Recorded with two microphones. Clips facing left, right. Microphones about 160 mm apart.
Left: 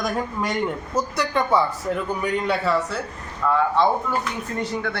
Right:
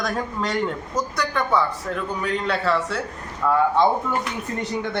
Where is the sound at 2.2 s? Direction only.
5° left (ahead or behind).